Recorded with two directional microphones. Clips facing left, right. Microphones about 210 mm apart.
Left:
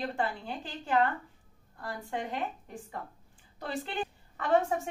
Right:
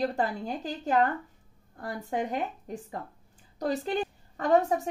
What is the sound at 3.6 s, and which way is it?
A woman's voice, 40° right (ahead or behind).